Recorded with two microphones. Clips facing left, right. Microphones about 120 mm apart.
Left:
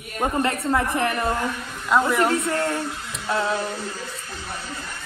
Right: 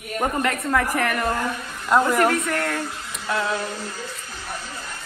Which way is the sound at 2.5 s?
25° left (ahead or behind).